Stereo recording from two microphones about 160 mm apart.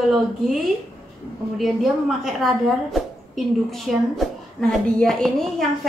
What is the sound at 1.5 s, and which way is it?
Speech, centre (ahead or behind).